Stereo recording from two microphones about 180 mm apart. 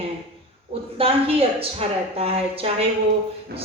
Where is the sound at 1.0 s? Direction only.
30° right (ahead or behind).